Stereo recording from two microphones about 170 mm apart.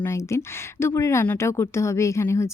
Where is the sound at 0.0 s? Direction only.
15° left (ahead or behind).